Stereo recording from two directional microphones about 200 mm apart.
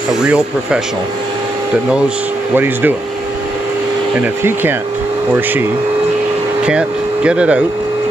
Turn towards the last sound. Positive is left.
turn(degrees=-5)  # may be behind; listen again after turning